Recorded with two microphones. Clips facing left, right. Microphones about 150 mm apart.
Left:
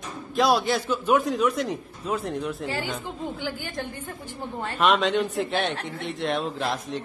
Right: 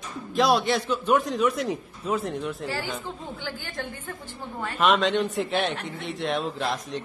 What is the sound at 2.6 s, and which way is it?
A woman's voice, 20° left (ahead or behind).